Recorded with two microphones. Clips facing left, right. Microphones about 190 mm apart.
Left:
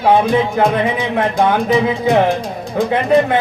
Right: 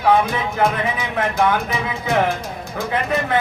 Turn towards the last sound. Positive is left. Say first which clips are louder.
# left 7 dB
turn(degrees=25)  # may be behind; listen again after turning